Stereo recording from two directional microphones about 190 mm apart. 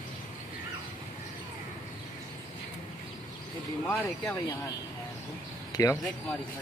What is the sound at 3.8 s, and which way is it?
Speech, 10° left (ahead or behind).